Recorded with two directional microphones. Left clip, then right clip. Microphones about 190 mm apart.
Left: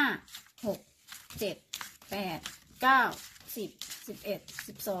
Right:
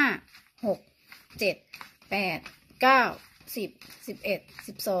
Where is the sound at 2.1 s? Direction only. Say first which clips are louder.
Right 8 dB; 45° right (ahead or behind).